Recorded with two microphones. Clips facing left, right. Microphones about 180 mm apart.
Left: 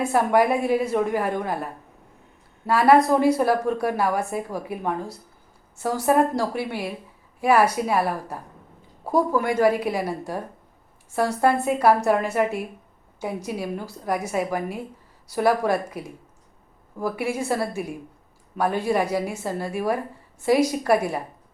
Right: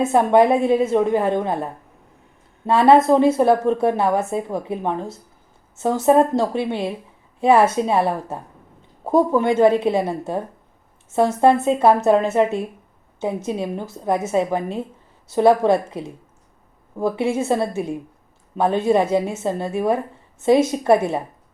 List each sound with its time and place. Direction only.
0.0 s a woman's voice: 20° right (ahead or behind)